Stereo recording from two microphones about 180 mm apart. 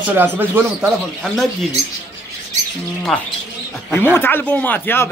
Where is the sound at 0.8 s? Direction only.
Centre (ahead or behind).